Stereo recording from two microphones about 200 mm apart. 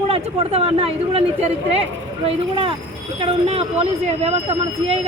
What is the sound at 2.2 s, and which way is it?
A man's voice, 25° right (ahead or behind).